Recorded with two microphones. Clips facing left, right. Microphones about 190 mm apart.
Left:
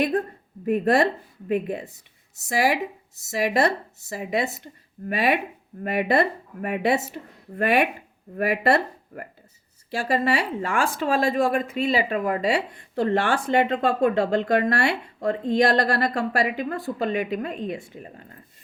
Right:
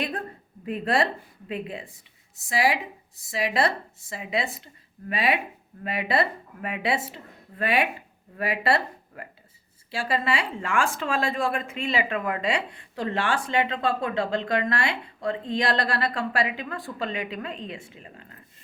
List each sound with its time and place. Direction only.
0.6 s speech: 45° left (ahead or behind)